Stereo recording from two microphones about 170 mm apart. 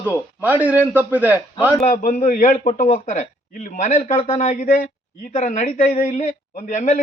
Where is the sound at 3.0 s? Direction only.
50° left (ahead or behind).